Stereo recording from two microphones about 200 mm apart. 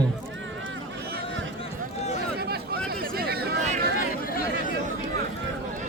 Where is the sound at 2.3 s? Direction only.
50° right (ahead or behind).